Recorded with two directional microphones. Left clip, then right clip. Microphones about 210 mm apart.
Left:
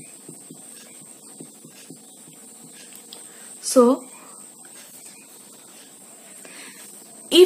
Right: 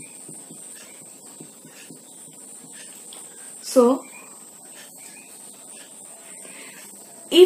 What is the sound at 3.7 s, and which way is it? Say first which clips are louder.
Speech: left 1 dB; centre (ahead or behind).